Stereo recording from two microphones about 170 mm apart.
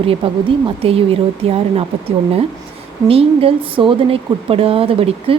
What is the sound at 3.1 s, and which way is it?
Speech, 35° right (ahead or behind).